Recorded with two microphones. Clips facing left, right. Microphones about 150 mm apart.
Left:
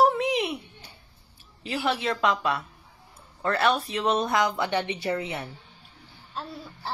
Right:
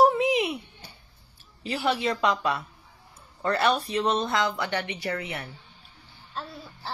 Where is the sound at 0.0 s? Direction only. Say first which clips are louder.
Right 2 dB; centre (ahead or behind).